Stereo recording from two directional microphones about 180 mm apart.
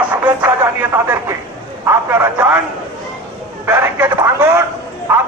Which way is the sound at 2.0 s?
10° right (ahead or behind).